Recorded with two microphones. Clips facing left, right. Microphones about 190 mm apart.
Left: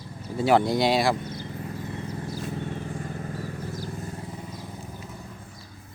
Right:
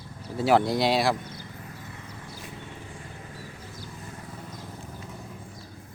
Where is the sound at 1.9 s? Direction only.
35° left (ahead or behind); by 3.9 s 50° left (ahead or behind).